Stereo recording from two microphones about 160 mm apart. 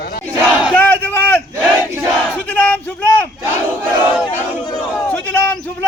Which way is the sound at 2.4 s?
10° left (ahead or behind).